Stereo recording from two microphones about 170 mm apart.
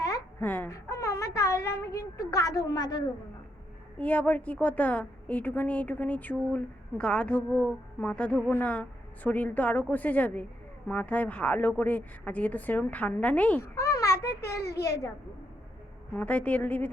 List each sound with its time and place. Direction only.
0.0 s a sound: 15° left (ahead or behind)
3.9 s a woman's voice: 10° left (ahead or behind)
14.6 s a child's voice: 70° left (ahead or behind)
16.1 s a woman's voice: 10° left (ahead or behind)